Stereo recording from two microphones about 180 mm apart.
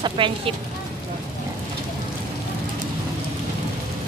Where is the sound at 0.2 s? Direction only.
30° right (ahead or behind).